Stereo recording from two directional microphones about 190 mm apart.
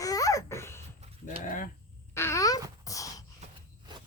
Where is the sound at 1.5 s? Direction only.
45° left (ahead or behind).